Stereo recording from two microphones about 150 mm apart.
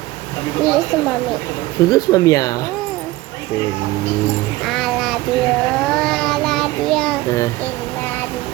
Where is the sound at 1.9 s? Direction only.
25° left (ahead or behind).